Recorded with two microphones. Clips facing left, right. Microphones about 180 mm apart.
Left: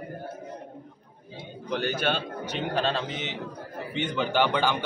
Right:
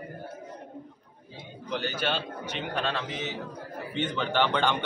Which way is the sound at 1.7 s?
50° left (ahead or behind).